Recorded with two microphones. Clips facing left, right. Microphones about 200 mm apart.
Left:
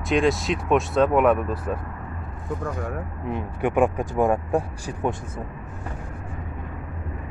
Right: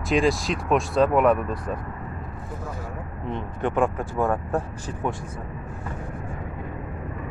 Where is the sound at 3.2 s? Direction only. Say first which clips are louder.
Left 1 dB; 10° left (ahead or behind).